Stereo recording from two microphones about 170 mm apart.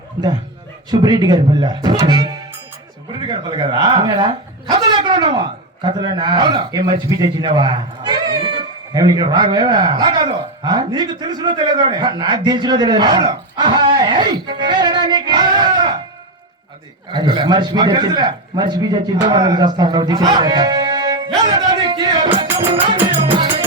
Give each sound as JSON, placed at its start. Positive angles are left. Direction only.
{"t": 0.9, "sound": "speech", "side_deg": -25}
{"t": 13.9, "sound": "music", "side_deg": -25}
{"t": 17.1, "sound": "a man's voice", "side_deg": -25}
{"t": 23.0, "sound": "music", "side_deg": -30}